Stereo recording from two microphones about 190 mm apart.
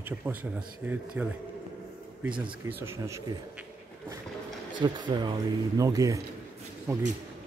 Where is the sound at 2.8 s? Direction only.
15° right (ahead or behind).